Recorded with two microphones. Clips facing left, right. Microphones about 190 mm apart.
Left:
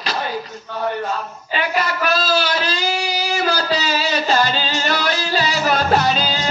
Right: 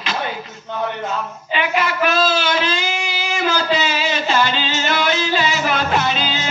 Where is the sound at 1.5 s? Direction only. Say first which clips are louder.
Right 1 dB; 40° left (ahead or behind).